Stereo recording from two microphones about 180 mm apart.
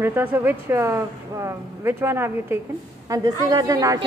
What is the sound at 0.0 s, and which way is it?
Speech, 10° right (ahead or behind).